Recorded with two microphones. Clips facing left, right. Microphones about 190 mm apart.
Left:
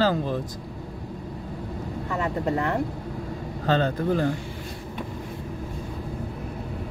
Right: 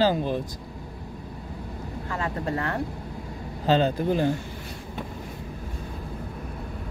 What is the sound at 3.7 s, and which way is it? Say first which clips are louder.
Speech: right 1 dB; 25° right (ahead or behind).